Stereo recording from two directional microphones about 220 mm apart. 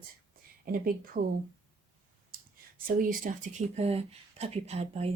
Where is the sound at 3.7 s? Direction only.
30° right (ahead or behind).